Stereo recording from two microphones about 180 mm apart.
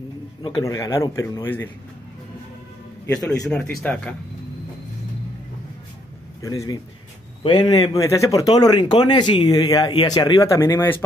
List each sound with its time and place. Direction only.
0.4 s speech: 20° left (ahead or behind)
3.5 s speech: 10° left (ahead or behind)
6.4 s speech: 20° left (ahead or behind)